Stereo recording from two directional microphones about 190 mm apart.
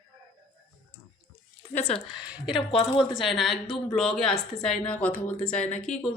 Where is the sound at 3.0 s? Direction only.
Centre (ahead or behind).